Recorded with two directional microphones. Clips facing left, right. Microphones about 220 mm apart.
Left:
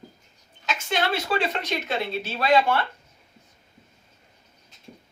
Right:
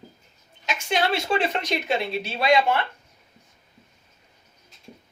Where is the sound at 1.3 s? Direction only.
15° right (ahead or behind).